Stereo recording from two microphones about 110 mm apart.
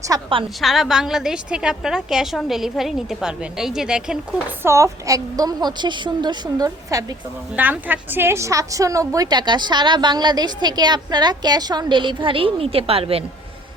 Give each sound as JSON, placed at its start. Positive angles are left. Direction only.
{"t": 0.1, "sound": "a woman's voice", "side_deg": -35}
{"t": 0.6, "sound": "a woman's voice", "side_deg": 0}
{"t": 4.6, "sound": "a woman's voice", "side_deg": -25}
{"t": 7.5, "sound": "a woman's voice", "side_deg": -15}